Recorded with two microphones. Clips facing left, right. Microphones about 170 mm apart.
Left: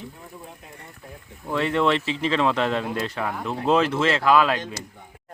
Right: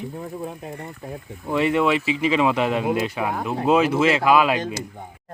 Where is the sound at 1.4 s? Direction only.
10° right (ahead or behind).